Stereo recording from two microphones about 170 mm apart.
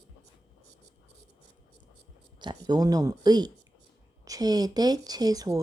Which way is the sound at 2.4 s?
25° right (ahead or behind).